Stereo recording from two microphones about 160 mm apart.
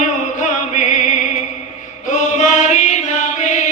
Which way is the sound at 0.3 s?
50° left (ahead or behind).